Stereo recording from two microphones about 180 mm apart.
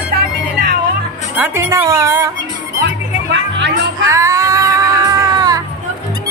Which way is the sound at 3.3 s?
85° right.